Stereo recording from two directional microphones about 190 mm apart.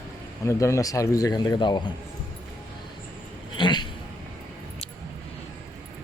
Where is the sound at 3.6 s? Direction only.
25° left (ahead or behind).